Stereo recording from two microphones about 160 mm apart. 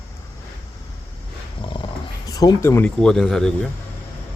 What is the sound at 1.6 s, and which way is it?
Dog, 30° left (ahead or behind).